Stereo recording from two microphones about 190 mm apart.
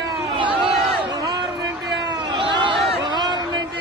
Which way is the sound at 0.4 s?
25° right (ahead or behind).